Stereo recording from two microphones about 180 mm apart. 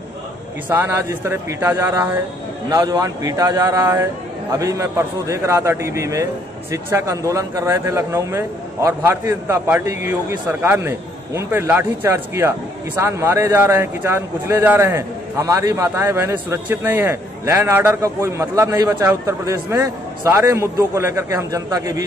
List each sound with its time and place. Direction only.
0.7 s a man's voice: 15° right (ahead or behind)